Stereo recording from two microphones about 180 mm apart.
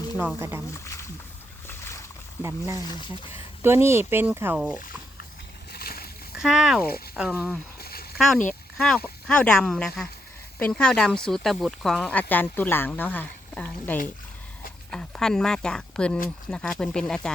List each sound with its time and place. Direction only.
0.3 s speech: 15° right (ahead or behind)
2.4 s speech: 15° right (ahead or behind)
2.8 s speech: 25° left (ahead or behind)
3.6 s speech: 15° right (ahead or behind)
5.7 s splash: 60° left (ahead or behind)
6.3 s speech: 5° right (ahead or behind)
7.8 s a sound: 60° left (ahead or behind)
9.2 s speech: 5° left (ahead or behind)